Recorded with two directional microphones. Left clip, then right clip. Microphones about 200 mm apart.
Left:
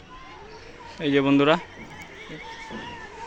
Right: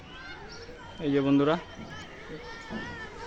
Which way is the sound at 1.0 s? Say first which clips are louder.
Left 5 dB; 20° left (ahead or behind).